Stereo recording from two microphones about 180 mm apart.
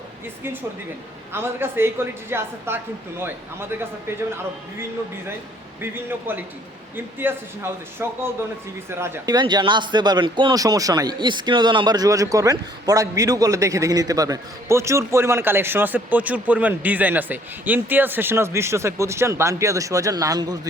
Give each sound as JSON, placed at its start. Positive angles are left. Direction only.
{"t": 1.3, "sound": "speech", "side_deg": -10}
{"t": 5.8, "sound": "speech", "side_deg": -10}